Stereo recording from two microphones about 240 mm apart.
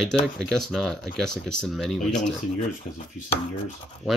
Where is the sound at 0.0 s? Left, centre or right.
Centre.